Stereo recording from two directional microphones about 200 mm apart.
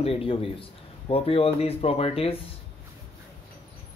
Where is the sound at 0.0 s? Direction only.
30° left (ahead or behind).